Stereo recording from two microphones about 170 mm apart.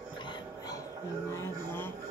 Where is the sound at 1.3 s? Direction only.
15° left (ahead or behind).